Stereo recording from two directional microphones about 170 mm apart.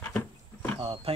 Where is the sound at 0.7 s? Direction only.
35° right (ahead or behind).